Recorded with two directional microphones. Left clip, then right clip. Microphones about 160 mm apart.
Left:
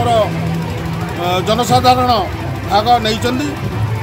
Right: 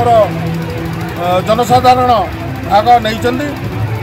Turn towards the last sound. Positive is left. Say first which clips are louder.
# right 4 dB
turn(degrees=-15)  # may be behind; listen again after turning